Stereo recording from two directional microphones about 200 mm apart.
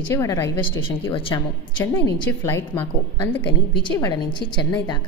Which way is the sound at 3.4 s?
25° left (ahead or behind).